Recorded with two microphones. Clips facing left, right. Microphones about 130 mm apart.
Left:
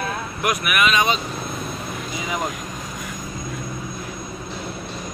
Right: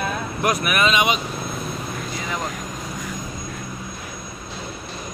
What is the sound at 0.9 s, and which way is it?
Speech, 15° right (ahead or behind).